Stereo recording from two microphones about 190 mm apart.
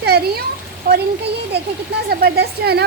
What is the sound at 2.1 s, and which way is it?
Speech, 55° right (ahead or behind).